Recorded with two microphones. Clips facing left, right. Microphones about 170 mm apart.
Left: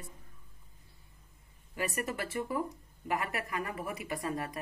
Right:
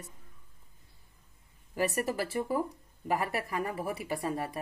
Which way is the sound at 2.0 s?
35° right (ahead or behind).